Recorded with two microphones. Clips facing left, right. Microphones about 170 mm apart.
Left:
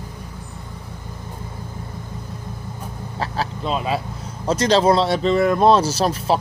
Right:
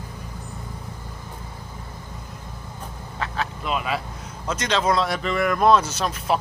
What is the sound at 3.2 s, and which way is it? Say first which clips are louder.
Vehicle: left 3 dB; 30° left (ahead or behind).